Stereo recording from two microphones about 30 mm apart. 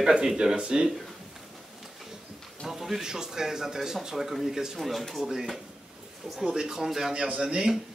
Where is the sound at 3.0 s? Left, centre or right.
Centre.